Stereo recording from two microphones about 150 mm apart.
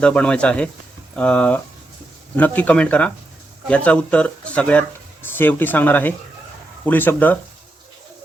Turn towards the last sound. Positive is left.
turn(degrees=10)  # may be behind; listen again after turning